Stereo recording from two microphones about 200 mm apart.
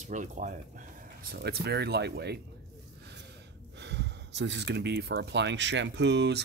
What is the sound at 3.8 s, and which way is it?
Speech, 60° right (ahead or behind).